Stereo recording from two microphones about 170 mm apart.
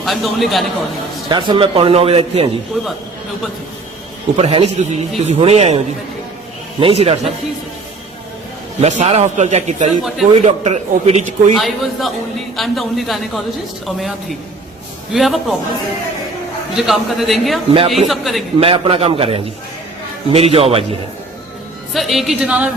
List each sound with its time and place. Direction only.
0.0 s a man's voice: centre (ahead or behind)
1.3 s a man's voice: 25° right (ahead or behind)
4.4 s a man's voice: 40° right (ahead or behind)
8.8 s a man's voice: 45° right (ahead or behind)
11.5 s a man's voice: centre (ahead or behind)
16.7 s a man's voice: centre (ahead or behind)
18.6 s a man's voice: 35° right (ahead or behind)
21.9 s a man's voice: centre (ahead or behind)